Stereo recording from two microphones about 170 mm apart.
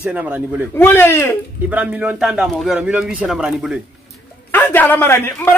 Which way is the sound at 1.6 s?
10° right (ahead or behind).